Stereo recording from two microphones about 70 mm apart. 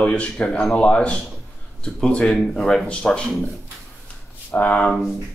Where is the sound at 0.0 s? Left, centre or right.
Centre.